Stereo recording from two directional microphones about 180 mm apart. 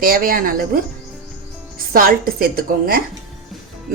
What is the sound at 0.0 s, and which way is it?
Speech, 55° right (ahead or behind).